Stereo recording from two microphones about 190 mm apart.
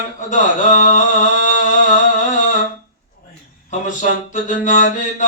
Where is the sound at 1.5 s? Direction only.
40° left (ahead or behind).